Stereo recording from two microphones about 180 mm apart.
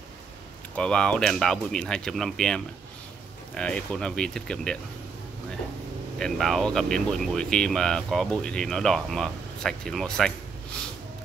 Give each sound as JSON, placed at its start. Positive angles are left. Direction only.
{"t": 0.7, "sound": "speech", "side_deg": 5}
{"t": 6.1, "sound": "speech", "side_deg": 0}